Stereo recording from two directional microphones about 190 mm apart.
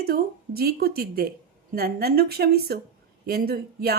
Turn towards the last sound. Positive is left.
turn(degrees=-55)  # may be behind; listen again after turning